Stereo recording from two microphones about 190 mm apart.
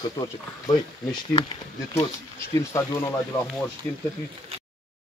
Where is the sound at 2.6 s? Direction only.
15° left (ahead or behind).